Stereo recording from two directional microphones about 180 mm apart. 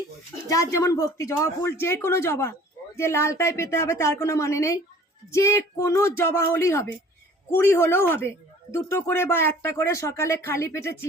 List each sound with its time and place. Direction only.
0.4 s speech: 15° left (ahead or behind)